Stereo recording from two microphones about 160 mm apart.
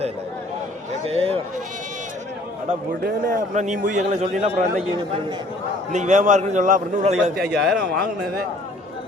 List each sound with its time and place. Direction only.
1.0 s speech: 35° right (ahead or behind)
3.0 s a man's voice: 55° right (ahead or behind)
5.9 s a man's voice: 50° right (ahead or behind)
7.3 s speech: centre (ahead or behind)